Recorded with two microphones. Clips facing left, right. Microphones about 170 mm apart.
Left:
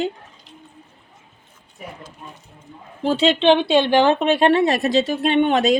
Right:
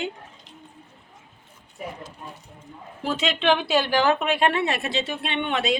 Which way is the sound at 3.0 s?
30° left (ahead or behind).